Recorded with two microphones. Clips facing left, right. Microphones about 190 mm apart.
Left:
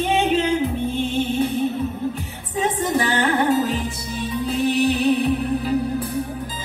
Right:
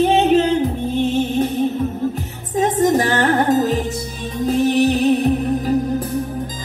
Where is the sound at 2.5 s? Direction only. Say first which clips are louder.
Right 6 dB; 40° right (ahead or behind).